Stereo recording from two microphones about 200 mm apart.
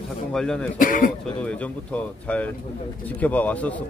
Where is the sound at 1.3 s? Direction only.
5° left (ahead or behind).